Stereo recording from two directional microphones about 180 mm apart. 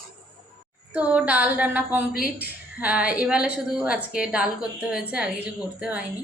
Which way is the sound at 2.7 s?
5° right (ahead or behind).